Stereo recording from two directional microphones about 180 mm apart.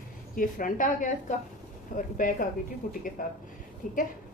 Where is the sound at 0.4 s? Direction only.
50° left (ahead or behind).